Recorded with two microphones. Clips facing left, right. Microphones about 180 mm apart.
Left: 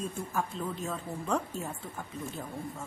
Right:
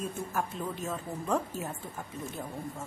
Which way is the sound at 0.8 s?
5° right (ahead or behind).